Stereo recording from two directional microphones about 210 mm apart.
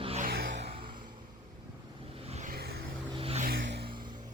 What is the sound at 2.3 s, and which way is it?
Vehicle, 35° right (ahead or behind).